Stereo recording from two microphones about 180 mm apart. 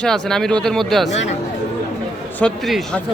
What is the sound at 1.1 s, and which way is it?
Speech, 40° left (ahead or behind).